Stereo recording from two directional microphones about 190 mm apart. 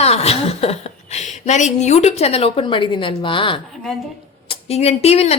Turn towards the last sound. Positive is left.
turn(degrees=35)  # may be behind; listen again after turning